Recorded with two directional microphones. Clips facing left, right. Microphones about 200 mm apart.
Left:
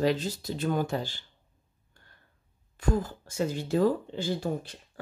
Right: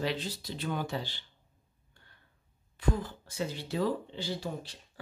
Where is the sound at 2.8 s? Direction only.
45° left (ahead or behind).